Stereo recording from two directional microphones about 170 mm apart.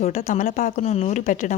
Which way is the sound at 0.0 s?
45° left (ahead or behind).